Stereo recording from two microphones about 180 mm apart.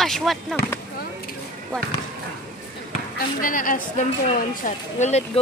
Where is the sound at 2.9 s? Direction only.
50° left (ahead or behind).